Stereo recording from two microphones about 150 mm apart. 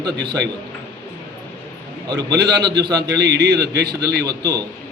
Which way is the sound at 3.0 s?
90° right.